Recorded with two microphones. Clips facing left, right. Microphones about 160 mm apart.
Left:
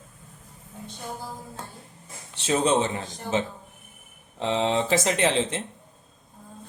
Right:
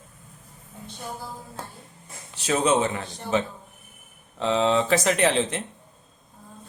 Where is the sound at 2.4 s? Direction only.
30° left (ahead or behind).